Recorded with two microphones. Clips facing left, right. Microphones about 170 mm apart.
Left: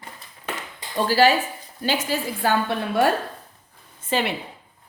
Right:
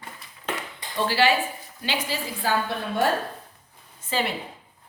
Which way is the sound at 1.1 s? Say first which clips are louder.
Left 4 dB; 40° left (ahead or behind).